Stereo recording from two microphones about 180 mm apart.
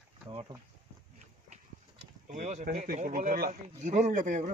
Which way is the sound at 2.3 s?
40° right (ahead or behind).